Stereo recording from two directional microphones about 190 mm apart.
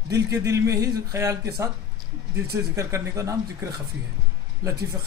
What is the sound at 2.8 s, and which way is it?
A man's voice, 15° right (ahead or behind).